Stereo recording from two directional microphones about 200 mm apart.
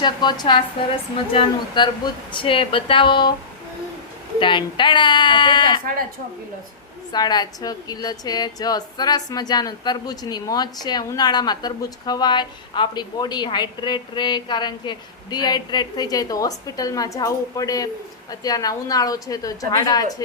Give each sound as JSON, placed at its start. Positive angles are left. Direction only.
{"t": 0.0, "sound": "a woman's voice", "side_deg": 20}
{"t": 4.4, "sound": "a woman's voice", "side_deg": 25}
{"t": 7.1, "sound": "a woman's voice", "side_deg": 20}